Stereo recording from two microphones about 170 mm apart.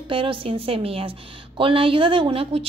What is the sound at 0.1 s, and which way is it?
A woman's voice, 30° right (ahead or behind).